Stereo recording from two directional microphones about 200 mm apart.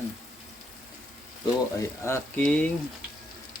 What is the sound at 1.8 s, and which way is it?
Frying, 15° left (ahead or behind).